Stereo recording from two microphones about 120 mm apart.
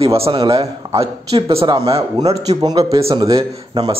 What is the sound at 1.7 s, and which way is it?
A man's voice, 30° right (ahead or behind).